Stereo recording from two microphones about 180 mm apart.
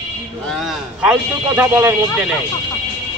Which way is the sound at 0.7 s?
5° right (ahead or behind).